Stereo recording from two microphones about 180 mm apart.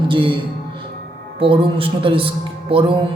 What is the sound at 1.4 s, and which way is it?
A man's voice, 30° right (ahead or behind).